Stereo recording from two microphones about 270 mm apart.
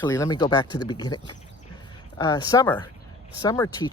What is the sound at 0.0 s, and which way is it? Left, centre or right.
Speech, centre.